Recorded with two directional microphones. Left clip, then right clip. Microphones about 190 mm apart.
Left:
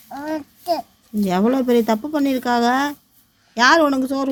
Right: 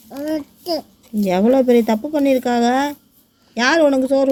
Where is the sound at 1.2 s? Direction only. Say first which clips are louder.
Right 4 dB; 35° left (ahead or behind).